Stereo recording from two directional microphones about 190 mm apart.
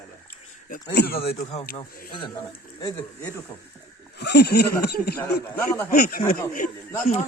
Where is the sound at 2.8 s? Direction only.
15° left (ahead or behind).